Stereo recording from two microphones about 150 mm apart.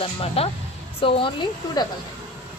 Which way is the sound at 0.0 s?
40° left (ahead or behind).